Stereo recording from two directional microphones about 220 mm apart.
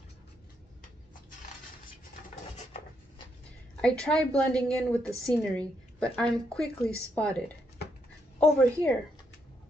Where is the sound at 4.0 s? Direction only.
5° left (ahead or behind).